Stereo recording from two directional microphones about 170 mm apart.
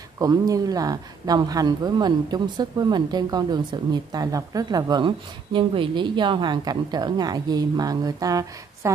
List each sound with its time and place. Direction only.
0.2 s speech: 20° right (ahead or behind)